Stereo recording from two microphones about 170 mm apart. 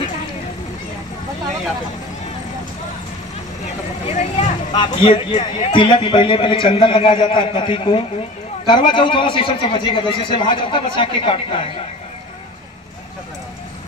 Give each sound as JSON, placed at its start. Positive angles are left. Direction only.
{"t": 4.1, "sound": "speech", "side_deg": 45}
{"t": 4.7, "sound": "a man's voice", "side_deg": 30}